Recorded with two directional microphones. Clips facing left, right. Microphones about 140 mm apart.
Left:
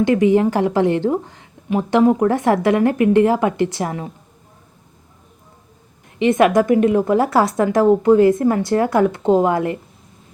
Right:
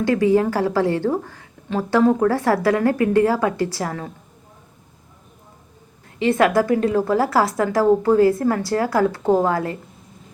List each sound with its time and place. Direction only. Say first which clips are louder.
0.0 s a woman's voice: left 3 dB; 20° left (ahead or behind)
6.1 s a woman's voice: left 3 dB; 20° left (ahead or behind)